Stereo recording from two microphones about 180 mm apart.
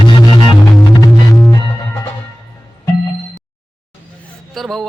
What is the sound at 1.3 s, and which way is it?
Music, 15° left (ahead or behind).